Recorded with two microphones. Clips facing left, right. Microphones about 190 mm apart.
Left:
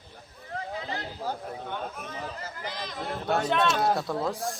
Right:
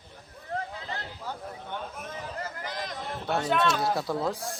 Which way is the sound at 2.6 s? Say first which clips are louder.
Right 1 dB; 40° right (ahead or behind).